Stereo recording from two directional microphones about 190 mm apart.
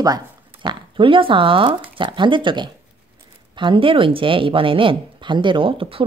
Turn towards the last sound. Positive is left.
turn(degrees=-30)  # may be behind; listen again after turning